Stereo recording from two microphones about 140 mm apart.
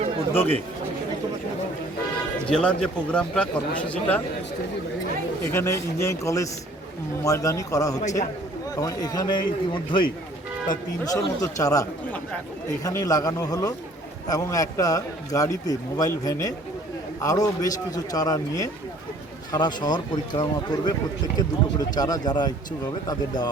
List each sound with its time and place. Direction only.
0.3 s a man's voice: 15° left (ahead or behind)
2.5 s a man's voice: 5° left (ahead or behind)
5.5 s a man's voice: 20° left (ahead or behind)